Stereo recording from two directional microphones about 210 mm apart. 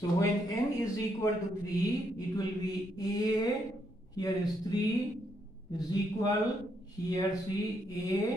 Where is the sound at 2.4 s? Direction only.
20° left (ahead or behind).